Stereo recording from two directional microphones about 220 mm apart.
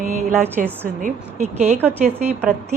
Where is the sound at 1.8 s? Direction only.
10° right (ahead or behind).